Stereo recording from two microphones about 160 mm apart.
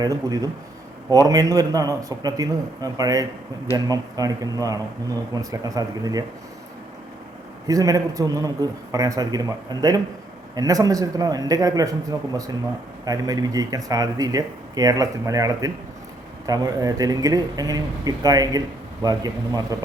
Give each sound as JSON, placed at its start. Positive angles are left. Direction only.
{"t": 0.0, "sound": "speech", "side_deg": -25}
{"t": 7.7, "sound": "speech", "side_deg": -20}